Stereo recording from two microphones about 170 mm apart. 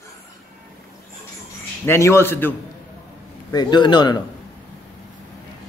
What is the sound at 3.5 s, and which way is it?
Speech, 25° left (ahead or behind).